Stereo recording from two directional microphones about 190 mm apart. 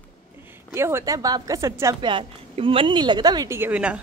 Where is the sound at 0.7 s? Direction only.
15° right (ahead or behind).